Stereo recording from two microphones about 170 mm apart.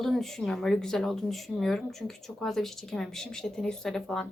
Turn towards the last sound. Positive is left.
turn(degrees=5)  # may be behind; listen again after turning